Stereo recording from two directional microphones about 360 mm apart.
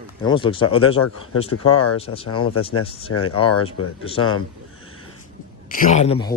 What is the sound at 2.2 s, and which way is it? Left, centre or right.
Speech, left.